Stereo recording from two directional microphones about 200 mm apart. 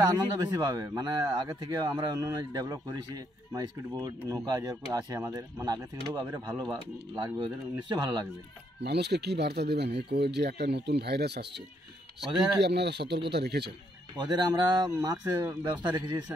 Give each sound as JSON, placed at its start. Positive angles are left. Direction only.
{"t": 0.0, "sound": "speech", "side_deg": -20}
{"t": 8.7, "sound": "speech", "side_deg": -55}
{"t": 14.1, "sound": "speech", "side_deg": -20}